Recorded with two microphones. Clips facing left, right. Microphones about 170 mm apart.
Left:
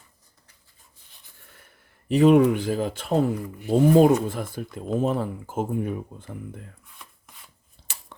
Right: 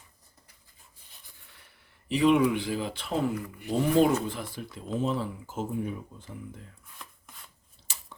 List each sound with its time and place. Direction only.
1.5 s speech: 45° left (ahead or behind)
7.0 s rub: centre (ahead or behind)
7.9 s a sound: 60° left (ahead or behind)